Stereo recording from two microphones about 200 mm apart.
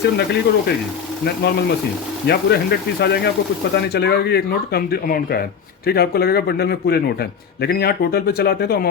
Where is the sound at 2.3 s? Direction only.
55° left (ahead or behind).